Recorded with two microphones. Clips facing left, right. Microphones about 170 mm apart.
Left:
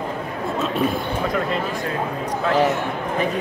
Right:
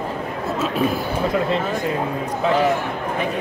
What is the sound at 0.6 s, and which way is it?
Speech, centre (ahead or behind).